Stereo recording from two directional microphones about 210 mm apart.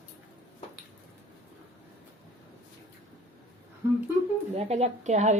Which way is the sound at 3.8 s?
10° right (ahead or behind).